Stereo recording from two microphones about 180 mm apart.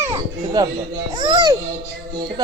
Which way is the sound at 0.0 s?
20° right (ahead or behind).